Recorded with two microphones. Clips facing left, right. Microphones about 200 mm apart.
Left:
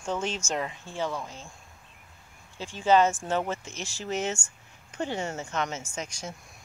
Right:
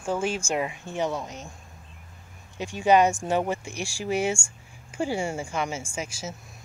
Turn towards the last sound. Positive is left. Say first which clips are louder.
# right 3 dB
turn(degrees=-5)  # may be behind; listen again after turning